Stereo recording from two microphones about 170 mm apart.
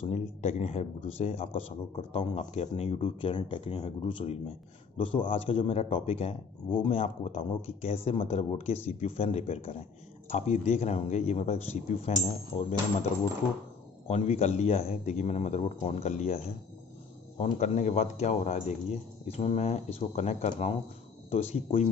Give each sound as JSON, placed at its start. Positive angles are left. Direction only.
{"t": 0.0, "sound": "speech", "side_deg": 40}
{"t": 12.5, "sound": "speech", "side_deg": 25}
{"t": 14.0, "sound": "speech", "side_deg": 40}
{"t": 17.4, "sound": "speech", "side_deg": 45}